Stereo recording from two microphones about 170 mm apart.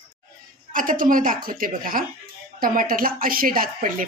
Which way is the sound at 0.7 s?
55° right (ahead or behind).